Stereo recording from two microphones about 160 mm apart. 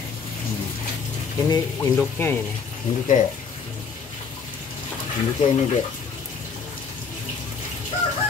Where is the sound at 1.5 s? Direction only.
15° left (ahead or behind).